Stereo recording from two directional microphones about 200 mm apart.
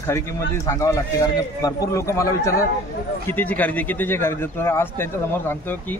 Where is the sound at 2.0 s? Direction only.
15° left (ahead or behind).